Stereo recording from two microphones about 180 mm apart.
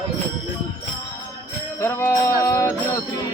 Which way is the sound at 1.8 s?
15° left (ahead or behind).